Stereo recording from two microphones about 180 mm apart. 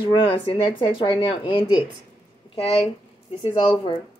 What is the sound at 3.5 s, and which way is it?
Speech, 25° left (ahead or behind).